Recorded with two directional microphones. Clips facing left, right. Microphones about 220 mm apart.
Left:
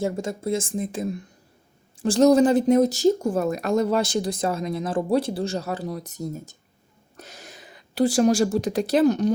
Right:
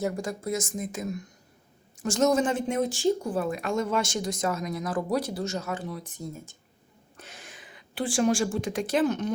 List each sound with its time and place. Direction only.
0.0 s speech: 25° left (ahead or behind)